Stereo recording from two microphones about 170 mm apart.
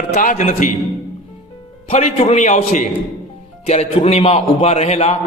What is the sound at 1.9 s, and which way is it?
A man's voice, 40° left (ahead or behind).